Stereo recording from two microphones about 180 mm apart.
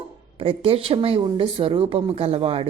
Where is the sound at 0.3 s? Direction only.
30° right (ahead or behind).